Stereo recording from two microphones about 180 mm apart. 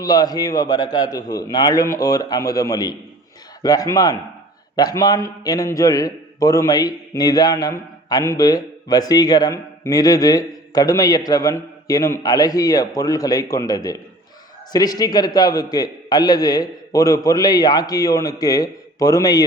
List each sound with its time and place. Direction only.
0.0 s a man's voice: 20° left (ahead or behind)